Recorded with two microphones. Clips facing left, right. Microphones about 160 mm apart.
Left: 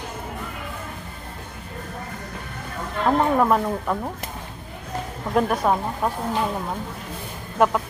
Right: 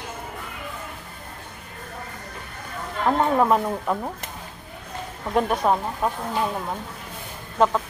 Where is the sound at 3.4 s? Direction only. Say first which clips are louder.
Even; 5° right (ahead or behind).